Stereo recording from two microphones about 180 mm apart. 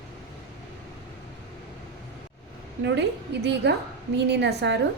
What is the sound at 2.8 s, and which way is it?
A woman's voice, 75° right (ahead or behind).